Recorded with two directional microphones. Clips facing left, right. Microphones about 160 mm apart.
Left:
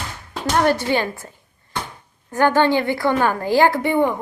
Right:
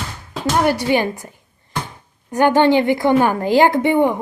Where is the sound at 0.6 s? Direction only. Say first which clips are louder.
Right 2 dB; 15° right (ahead or behind).